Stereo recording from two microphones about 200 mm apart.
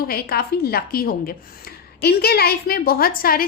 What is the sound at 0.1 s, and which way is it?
A woman's voice, 50° left (ahead or behind).